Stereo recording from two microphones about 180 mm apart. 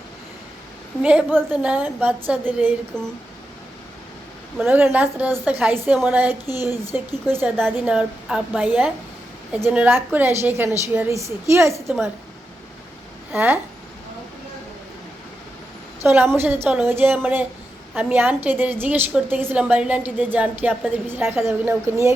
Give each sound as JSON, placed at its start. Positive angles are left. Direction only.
{"t": 1.0, "sound": "a woman's voice", "side_deg": -10}
{"t": 4.5, "sound": "a woman's voice", "side_deg": -5}
{"t": 13.3, "sound": "a woman's voice", "side_deg": -10}
{"t": 16.0, "sound": "a woman's voice", "side_deg": -15}